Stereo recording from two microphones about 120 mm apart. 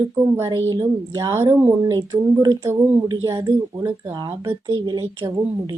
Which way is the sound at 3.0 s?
30° right (ahead or behind).